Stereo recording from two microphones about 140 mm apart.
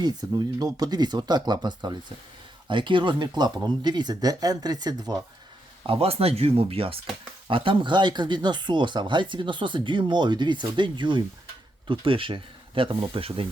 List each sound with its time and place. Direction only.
0.0 s speech: 30° right (ahead or behind)
5.8 s speech: 40° right (ahead or behind)